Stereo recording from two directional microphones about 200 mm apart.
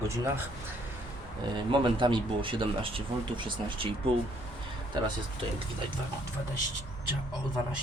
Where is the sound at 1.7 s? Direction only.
25° right (ahead or behind).